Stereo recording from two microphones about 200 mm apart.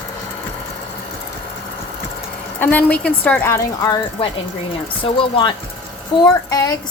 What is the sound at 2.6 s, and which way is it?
A woman's voice, 10° left (ahead or behind).